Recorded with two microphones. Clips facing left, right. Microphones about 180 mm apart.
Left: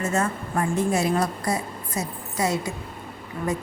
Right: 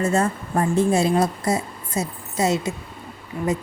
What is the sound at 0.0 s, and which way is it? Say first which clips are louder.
A woman's voice: right 4 dB; 30° right (ahead or behind).